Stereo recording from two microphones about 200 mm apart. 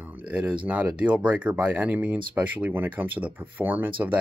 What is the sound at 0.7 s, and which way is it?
Speech, 5° right (ahead or behind).